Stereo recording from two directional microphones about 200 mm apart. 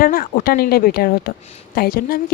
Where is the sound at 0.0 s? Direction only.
45° left (ahead or behind).